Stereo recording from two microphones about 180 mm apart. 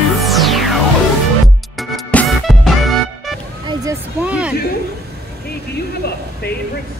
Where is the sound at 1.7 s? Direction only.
Centre (ahead or behind).